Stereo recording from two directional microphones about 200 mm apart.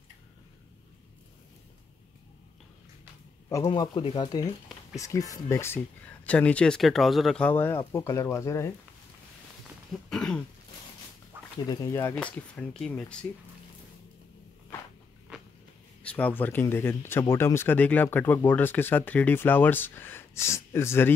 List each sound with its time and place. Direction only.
3.6 s speech: 20° left (ahead or behind)
10.0 s throat clearing: 5° left (ahead or behind)
11.6 s speech: 20° left (ahead or behind); by 13.2 s 5° left (ahead or behind)
15.3 s walk: 5° right (ahead or behind)
16.0 s speech: 5° left (ahead or behind)